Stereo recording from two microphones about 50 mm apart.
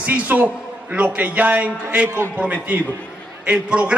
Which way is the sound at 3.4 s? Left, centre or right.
Right.